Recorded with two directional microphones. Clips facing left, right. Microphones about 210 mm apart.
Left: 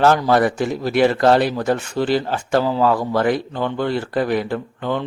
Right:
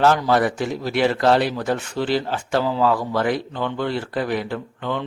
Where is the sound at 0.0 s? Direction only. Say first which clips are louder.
Left 2 dB; 45° left (ahead or behind).